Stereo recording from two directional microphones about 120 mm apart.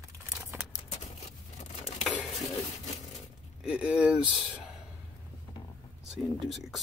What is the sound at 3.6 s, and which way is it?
Speech, 10° right (ahead or behind).